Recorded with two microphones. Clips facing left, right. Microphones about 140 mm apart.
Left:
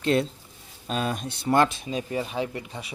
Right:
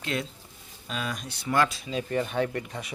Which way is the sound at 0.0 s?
30° left (ahead or behind).